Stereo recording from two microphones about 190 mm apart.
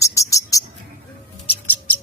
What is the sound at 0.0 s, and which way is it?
Bird, 15° left (ahead or behind).